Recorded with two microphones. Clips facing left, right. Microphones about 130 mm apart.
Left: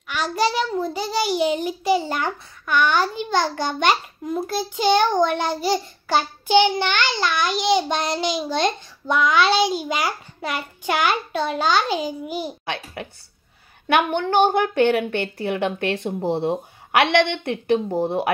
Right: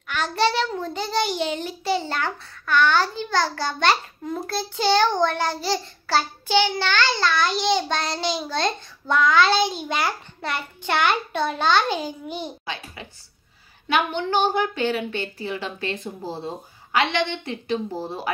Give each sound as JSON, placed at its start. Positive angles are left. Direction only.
{"t": 0.1, "sound": "a child's voice", "side_deg": 10}
{"t": 12.6, "sound": "a woman's voice", "side_deg": 60}